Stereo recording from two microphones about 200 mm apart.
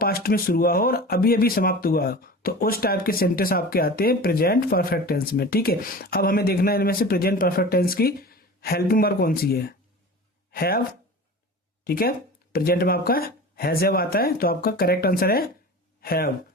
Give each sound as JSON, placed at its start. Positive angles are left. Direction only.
{"t": 0.0, "sound": "speech", "side_deg": 50}
{"t": 11.9, "sound": "speech", "side_deg": 50}